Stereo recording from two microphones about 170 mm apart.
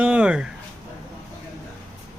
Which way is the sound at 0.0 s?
5° right (ahead or behind).